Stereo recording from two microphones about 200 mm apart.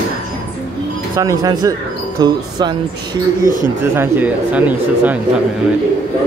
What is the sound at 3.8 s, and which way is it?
Speech, 10° right (ahead or behind).